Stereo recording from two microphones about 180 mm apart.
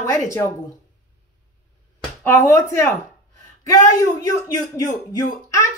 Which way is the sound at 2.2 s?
15° left (ahead or behind).